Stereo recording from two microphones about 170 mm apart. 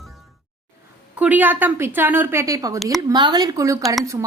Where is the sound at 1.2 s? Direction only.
10° right (ahead or behind).